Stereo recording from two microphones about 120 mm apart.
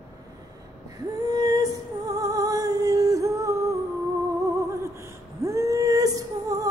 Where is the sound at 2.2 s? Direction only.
30° right (ahead or behind).